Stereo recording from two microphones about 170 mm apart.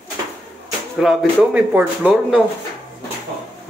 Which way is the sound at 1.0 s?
5° right (ahead or behind).